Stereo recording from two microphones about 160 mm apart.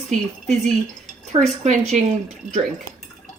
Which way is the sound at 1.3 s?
35° right (ahead or behind).